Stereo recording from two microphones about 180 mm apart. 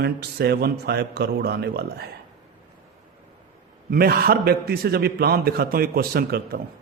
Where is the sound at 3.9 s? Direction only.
55° right (ahead or behind).